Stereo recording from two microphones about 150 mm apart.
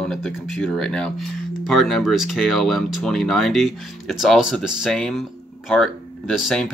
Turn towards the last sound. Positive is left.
turn(degrees=0)  # may be behind; listen again after turning